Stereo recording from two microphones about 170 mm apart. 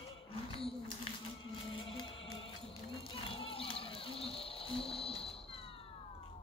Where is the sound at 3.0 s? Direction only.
30° left (ahead or behind).